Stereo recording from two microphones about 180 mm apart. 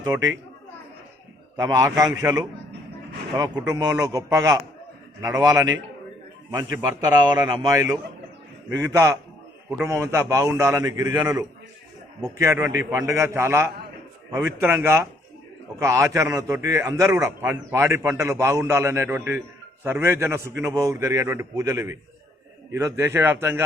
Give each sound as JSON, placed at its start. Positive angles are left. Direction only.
{"t": 0.1, "sound": "speech", "side_deg": -20}
{"t": 1.5, "sound": "speech", "side_deg": -20}
{"t": 3.6, "sound": "speech", "side_deg": -20}
{"t": 6.8, "sound": "a man's voice", "side_deg": -20}